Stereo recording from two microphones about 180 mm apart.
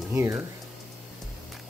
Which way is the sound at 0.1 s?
15° right (ahead or behind).